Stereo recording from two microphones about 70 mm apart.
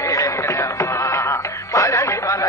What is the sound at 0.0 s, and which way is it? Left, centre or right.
Music, left.